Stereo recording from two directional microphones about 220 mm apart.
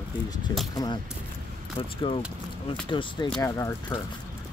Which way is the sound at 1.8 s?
25° left (ahead or behind).